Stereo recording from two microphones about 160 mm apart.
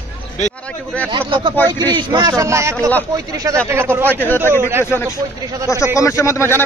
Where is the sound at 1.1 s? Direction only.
30° right (ahead or behind); by 4.2 s 15° right (ahead or behind).